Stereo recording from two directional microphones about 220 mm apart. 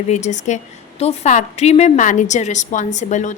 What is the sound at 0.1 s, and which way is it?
A woman's voice, 30° left (ahead or behind).